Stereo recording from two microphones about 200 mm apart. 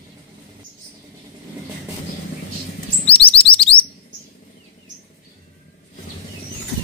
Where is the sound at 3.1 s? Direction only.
30° left (ahead or behind).